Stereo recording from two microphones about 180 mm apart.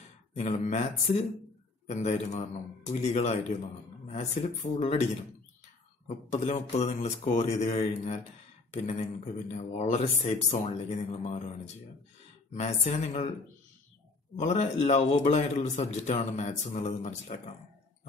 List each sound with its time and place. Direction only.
0.4 s a man's voice: 40° left (ahead or behind)
6.0 s a man's voice: 40° left (ahead or behind)
14.3 s a man's voice: 40° left (ahead or behind)